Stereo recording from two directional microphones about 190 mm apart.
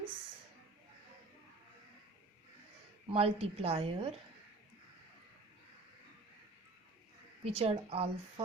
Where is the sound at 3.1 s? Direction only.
30° right (ahead or behind).